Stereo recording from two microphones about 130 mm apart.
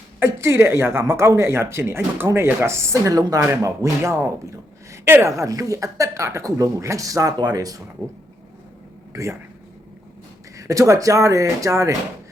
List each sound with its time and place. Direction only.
0.2 s speech: 20° right (ahead or behind)
9.1 s speech: 25° right (ahead or behind)
10.6 s speech: 25° right (ahead or behind)